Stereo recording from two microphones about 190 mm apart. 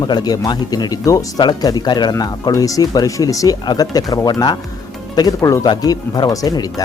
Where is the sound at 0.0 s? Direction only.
20° left (ahead or behind).